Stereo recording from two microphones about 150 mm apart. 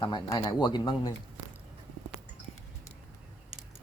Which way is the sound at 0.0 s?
30° left (ahead or behind).